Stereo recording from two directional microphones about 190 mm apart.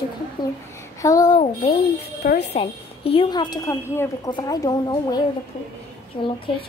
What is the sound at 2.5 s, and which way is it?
A woman's voice, 30° left (ahead or behind).